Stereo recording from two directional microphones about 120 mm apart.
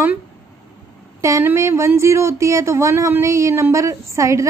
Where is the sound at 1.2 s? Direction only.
20° right (ahead or behind).